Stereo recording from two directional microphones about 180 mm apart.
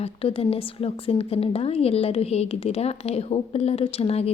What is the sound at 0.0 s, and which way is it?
A woman's voice, 35° left (ahead or behind).